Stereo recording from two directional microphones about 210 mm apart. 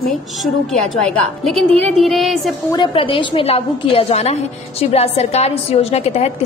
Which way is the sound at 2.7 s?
25° left (ahead or behind).